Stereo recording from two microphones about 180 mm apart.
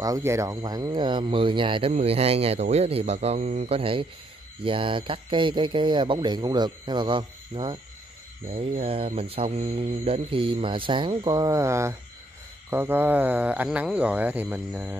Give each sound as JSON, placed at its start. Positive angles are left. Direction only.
{"t": 0.0, "sound": "speech", "side_deg": -15}